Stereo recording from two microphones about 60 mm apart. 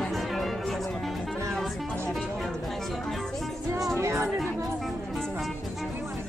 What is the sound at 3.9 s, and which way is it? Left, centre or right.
Speech, right.